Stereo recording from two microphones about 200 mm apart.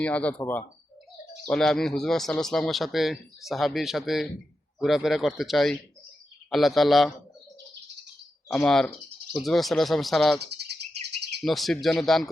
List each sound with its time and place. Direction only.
0.0 s speech: 5° left (ahead or behind)
8.4 s speech: centre (ahead or behind)
10.4 s bird: 55° right (ahead or behind)
11.3 s speech: centre (ahead or behind)